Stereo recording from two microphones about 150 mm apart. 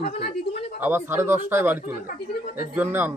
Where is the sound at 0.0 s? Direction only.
90° left.